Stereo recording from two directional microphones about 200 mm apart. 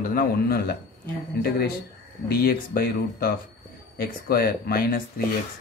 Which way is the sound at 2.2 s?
50° left (ahead or behind).